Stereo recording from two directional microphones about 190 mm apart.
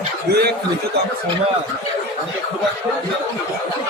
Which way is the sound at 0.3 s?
60° right (ahead or behind).